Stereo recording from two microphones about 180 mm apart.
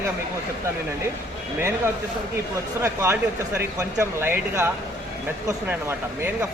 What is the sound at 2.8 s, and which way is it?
Speech, 15° right (ahead or behind).